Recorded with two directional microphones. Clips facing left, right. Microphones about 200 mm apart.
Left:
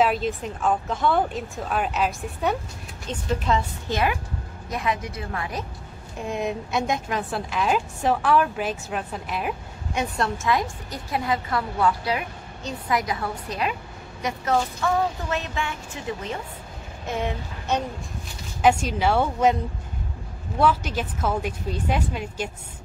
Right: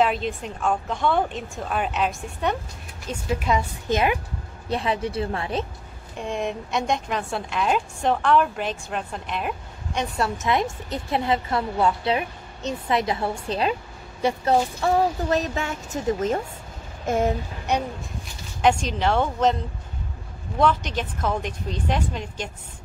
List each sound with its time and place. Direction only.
0.0 s a woman's voice: 5° left (ahead or behind)
3.1 s a woman's voice: 10° right (ahead or behind)
4.6 s a woman's voice: 30° right (ahead or behind)
6.2 s a woman's voice: 5° left (ahead or behind)
10.3 s a woman's voice: 20° right (ahead or behind); by 17.4 s 45° right (ahead or behind)
18.6 s a woman's voice: 5° left (ahead or behind)
20.5 s a woman's voice: 5° left (ahead or behind)